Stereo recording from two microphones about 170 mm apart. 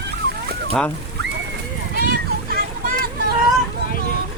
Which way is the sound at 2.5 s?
55° right (ahead or behind).